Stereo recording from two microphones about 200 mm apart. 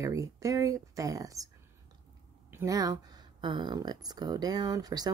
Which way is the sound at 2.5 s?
15° right (ahead or behind).